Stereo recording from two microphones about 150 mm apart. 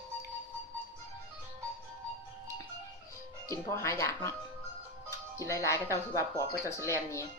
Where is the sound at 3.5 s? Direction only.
20° left (ahead or behind).